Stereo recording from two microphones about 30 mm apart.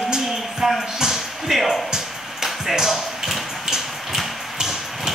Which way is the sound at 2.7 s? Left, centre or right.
Centre.